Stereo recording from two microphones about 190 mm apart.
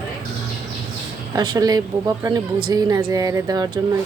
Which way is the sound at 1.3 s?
20° right (ahead or behind).